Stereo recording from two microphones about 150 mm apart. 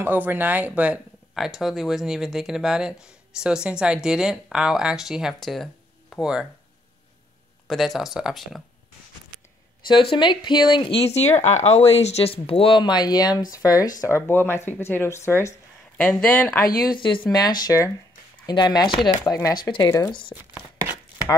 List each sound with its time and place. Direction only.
0.0 s speech: 15° right (ahead or behind); by 6.2 s 5° left (ahead or behind)
7.6 s speech: centre (ahead or behind)
10.1 s speech: 30° left (ahead or behind); by 16.6 s 10° left (ahead or behind)
16.8 s speech: 30° left (ahead or behind); by 20.5 s 15° left (ahead or behind)